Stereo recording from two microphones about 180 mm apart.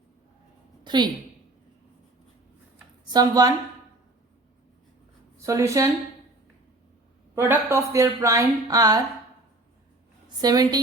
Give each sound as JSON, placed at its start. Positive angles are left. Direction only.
{"t": 0.9, "sound": "a woman's voice", "side_deg": -25}
{"t": 3.1, "sound": "a woman's voice", "side_deg": -20}
{"t": 5.4, "sound": "speech", "side_deg": -15}
{"t": 7.3, "sound": "speech", "side_deg": -10}
{"t": 10.2, "sound": "a woman's voice", "side_deg": -20}